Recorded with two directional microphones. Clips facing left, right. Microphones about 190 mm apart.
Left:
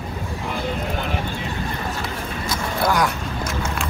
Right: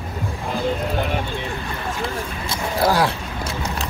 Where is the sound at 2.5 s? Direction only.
30° right (ahead or behind).